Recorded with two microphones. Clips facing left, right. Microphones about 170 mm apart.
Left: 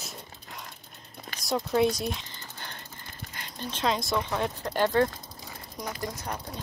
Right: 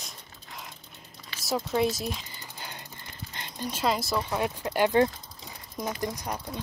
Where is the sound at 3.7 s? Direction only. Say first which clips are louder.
Even; 5° right (ahead or behind).